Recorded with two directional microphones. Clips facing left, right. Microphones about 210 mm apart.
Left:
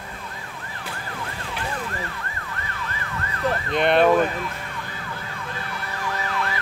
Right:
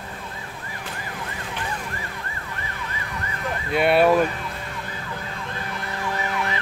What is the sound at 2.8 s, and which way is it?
Emergency vehicle, 15° right (ahead or behind).